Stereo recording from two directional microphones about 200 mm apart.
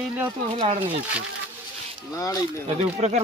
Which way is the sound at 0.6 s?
30° right (ahead or behind).